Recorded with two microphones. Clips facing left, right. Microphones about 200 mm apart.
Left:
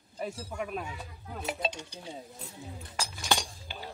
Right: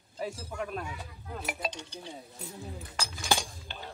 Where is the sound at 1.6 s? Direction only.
25° left (ahead or behind).